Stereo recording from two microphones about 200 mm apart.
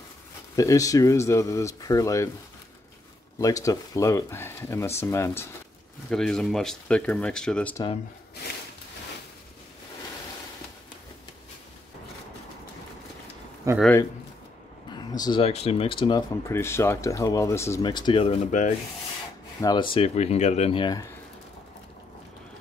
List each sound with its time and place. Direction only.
0.6 s speech: 15° left (ahead or behind)
3.3 s speech: 15° left (ahead or behind)
13.7 s speech: 15° right (ahead or behind)
14.9 s speech: 20° left (ahead or behind)
19.6 s speech: 20° left (ahead or behind)